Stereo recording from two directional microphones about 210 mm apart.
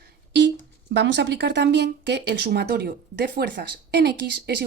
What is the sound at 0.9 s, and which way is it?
Speech, 55° right (ahead or behind).